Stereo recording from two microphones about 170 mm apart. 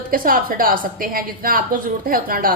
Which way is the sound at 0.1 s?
55° right (ahead or behind).